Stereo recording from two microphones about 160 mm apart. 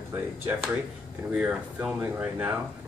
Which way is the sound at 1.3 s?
5° right (ahead or behind).